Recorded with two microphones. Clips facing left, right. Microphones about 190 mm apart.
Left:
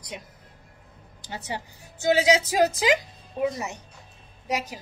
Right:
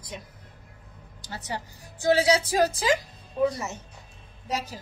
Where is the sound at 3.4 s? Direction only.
15° left (ahead or behind).